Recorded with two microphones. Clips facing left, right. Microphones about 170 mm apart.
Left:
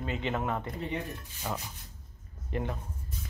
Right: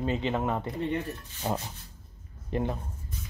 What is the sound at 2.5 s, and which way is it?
Filing, 25° right (ahead or behind).